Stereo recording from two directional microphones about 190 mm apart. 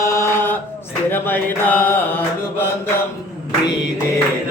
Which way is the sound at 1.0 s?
10° left (ahead or behind).